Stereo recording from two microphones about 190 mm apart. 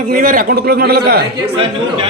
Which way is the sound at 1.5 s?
30° right (ahead or behind).